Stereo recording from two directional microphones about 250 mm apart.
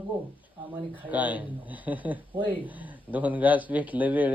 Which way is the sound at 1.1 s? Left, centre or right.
Centre.